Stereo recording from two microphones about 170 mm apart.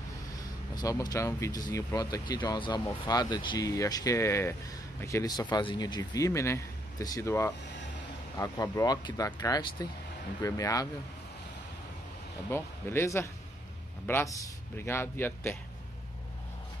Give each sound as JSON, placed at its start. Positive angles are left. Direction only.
{"t": 0.4, "sound": "speech", "side_deg": 20}
{"t": 12.4, "sound": "speech", "side_deg": 15}